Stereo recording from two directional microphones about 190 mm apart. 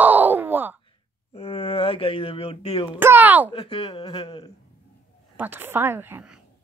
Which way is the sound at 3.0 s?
10° right (ahead or behind).